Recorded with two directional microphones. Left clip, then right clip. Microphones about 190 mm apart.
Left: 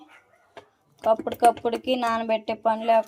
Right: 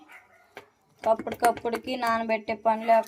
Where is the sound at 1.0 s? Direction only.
20° left (ahead or behind).